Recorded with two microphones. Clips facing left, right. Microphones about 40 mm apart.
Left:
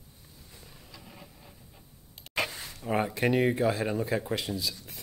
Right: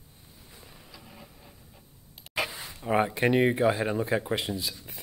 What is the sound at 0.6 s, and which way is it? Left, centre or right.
Vehicle, centre.